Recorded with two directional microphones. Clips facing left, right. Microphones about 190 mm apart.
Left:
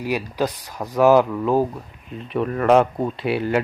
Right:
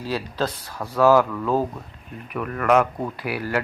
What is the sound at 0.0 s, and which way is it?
Speech, 15° left (ahead or behind).